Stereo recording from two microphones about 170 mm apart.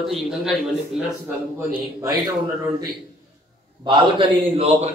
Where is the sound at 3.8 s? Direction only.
25° right (ahead or behind).